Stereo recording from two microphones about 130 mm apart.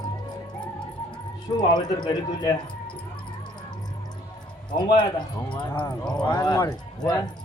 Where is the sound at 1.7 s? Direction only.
35° left (ahead or behind).